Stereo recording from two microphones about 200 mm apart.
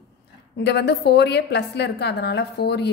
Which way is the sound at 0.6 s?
55° left (ahead or behind).